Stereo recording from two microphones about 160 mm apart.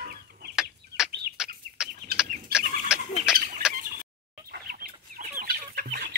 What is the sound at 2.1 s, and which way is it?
Chicken, 75° right (ahead or behind).